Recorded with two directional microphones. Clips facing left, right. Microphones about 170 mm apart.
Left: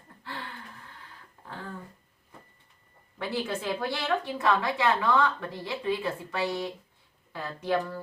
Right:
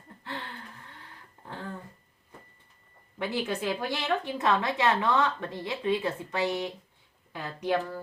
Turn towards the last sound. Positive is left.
turn(degrees=-15)  # may be behind; listen again after turning